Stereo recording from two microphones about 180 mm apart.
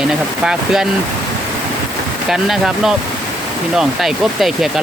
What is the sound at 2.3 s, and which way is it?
Speech, centre (ahead or behind).